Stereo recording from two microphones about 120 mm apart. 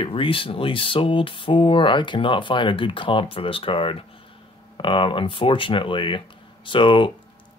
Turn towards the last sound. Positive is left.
turn(degrees=45)  # may be behind; listen again after turning